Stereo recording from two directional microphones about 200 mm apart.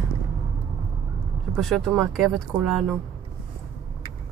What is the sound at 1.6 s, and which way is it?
Speech, centre (ahead or behind).